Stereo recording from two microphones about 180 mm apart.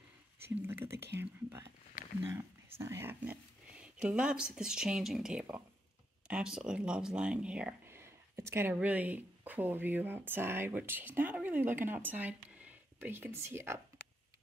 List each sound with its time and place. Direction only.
0.7 s speech: 15° right (ahead or behind)
0.9 s speech: 65° right (ahead or behind)
2.2 s speech: 15° right (ahead or behind)